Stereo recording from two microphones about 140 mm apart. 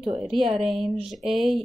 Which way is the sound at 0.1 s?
Centre (ahead or behind).